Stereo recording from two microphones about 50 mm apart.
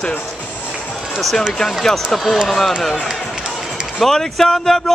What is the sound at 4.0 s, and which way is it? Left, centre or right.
Speech, centre.